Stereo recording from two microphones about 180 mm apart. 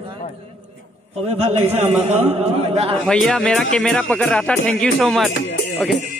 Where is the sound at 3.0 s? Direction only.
5° left (ahead or behind).